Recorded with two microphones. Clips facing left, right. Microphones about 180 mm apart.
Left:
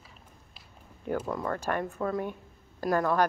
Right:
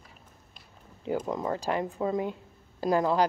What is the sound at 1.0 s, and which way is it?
A woman's voice, 15° right (ahead or behind).